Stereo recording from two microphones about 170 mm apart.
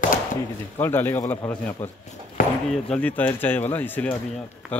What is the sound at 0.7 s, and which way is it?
Speech, 10° left (ahead or behind).